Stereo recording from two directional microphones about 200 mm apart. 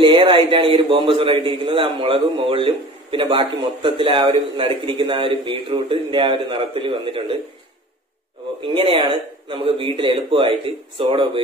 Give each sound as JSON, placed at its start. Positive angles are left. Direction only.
{"t": 0.0, "sound": "a man's voice", "side_deg": -25}
{"t": 8.5, "sound": "a man's voice", "side_deg": -25}